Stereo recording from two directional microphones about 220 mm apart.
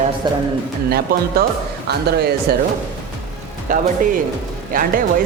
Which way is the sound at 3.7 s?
35° right (ahead or behind).